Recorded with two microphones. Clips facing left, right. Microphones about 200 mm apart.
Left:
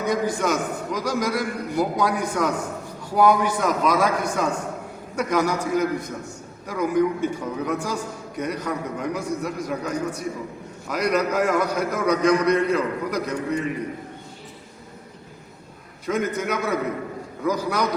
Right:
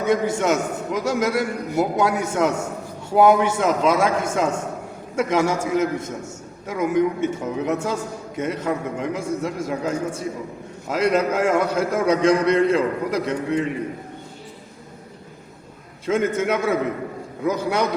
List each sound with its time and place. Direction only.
0.0 s a man's voice: 25° right (ahead or behind)
16.0 s a man's voice: 25° right (ahead or behind)